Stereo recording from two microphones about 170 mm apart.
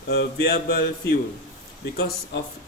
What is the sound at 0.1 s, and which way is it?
Mantra, 70° left (ahead or behind).